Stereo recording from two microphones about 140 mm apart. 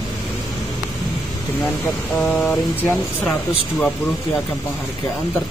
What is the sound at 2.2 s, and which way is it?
Speech, 5° left (ahead or behind).